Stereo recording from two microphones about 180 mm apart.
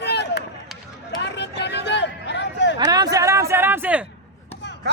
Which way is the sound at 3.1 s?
15° right (ahead or behind).